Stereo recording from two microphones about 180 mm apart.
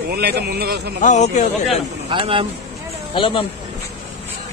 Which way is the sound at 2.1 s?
30° right (ahead or behind).